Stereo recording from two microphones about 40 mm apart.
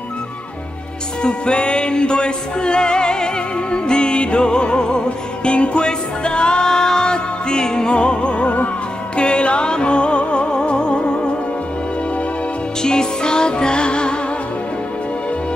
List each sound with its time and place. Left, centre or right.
1.2 s music: left
12.8 s music: centre